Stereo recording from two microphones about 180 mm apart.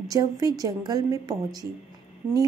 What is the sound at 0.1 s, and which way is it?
A woman's voice, 20° right (ahead or behind).